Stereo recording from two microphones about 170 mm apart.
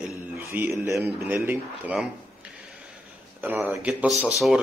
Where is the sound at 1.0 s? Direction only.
15° right (ahead or behind).